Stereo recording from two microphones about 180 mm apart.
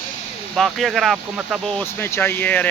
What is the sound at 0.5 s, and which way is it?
Speech, centre (ahead or behind).